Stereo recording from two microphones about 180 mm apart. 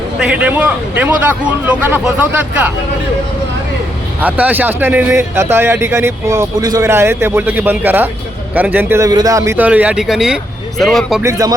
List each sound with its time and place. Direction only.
0.2 s a man's voice: 10° right (ahead or behind)
4.2 s a man's voice: 10° right (ahead or behind)
11.2 s a man's voice: 20° right (ahead or behind)